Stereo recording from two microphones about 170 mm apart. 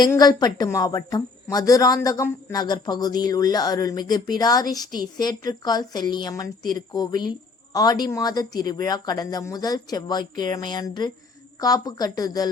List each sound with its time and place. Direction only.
0.0 s speech: 20° left (ahead or behind)